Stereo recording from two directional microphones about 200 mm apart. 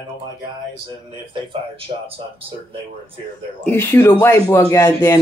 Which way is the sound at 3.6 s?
10° left (ahead or behind).